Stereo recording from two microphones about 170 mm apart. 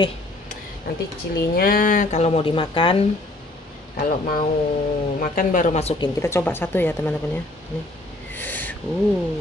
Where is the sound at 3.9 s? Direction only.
60° left (ahead or behind); by 5.9 s 40° left (ahead or behind).